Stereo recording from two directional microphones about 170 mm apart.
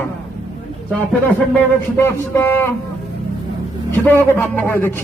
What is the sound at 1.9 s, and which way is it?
Speech, 15° left (ahead or behind).